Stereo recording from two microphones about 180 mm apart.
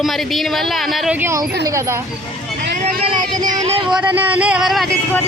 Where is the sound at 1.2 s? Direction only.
15° right (ahead or behind).